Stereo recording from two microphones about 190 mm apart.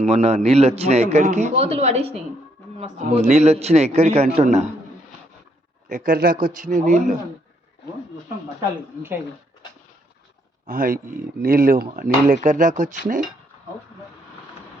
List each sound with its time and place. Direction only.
0.0 s a man's voice: 35° right (ahead or behind)
5.9 s speech: 50° right (ahead or behind)
10.7 s speech: 50° right (ahead or behind)